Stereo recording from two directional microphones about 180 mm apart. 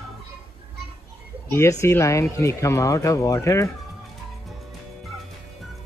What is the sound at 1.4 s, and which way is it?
Speech, 15° left (ahead or behind).